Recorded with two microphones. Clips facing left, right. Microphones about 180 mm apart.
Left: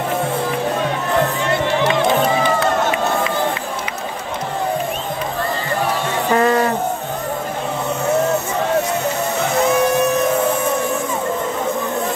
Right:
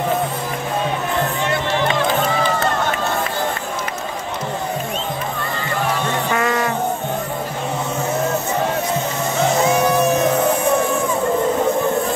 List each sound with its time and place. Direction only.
6.3 s music: 35° left (ahead or behind)